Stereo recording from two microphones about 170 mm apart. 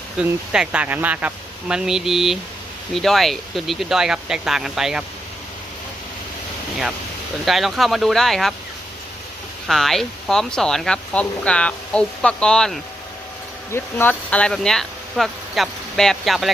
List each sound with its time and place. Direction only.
0.2 s speech: 5° right (ahead or behind)
7.4 s speech: centre (ahead or behind)
9.6 s speech: centre (ahead or behind)